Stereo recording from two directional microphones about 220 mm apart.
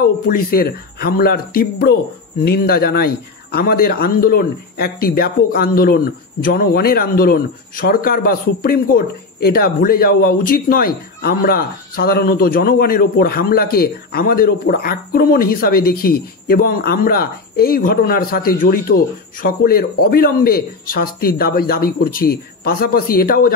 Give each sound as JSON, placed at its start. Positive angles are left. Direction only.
{"t": 0.3, "sound": "speech", "side_deg": 40}